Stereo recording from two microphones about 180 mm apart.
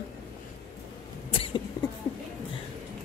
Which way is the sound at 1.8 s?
20° left (ahead or behind).